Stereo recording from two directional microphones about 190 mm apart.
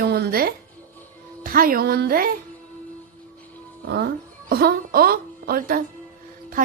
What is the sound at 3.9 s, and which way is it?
Speech, 60° right (ahead or behind).